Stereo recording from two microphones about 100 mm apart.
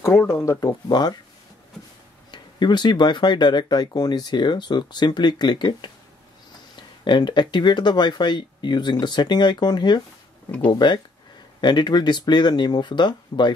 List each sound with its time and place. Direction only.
0.0 s speech: 25° left (ahead or behind); by 1.1 s 45° left (ahead or behind)
2.3 s speech: 45° left (ahead or behind)
7.1 s speech: 50° left (ahead or behind)